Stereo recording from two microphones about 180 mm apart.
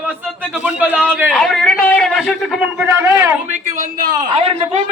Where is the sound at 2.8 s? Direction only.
10° right (ahead or behind).